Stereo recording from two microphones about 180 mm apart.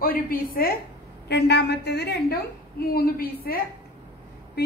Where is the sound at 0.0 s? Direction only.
50° left (ahead or behind).